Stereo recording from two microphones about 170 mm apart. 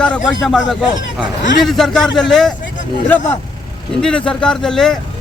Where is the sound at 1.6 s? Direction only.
Centre (ahead or behind).